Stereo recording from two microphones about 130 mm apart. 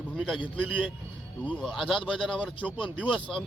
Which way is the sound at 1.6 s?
Centre (ahead or behind).